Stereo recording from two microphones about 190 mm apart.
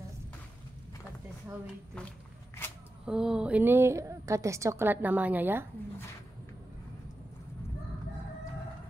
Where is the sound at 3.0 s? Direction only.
5° right (ahead or behind).